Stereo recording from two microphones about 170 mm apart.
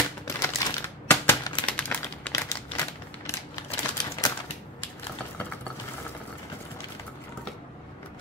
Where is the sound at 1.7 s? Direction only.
10° left (ahead or behind).